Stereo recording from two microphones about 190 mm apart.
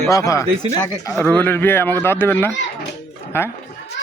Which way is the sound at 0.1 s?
15° left (ahead or behind).